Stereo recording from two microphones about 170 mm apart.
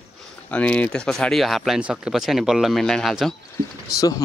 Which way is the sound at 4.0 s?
20° left (ahead or behind).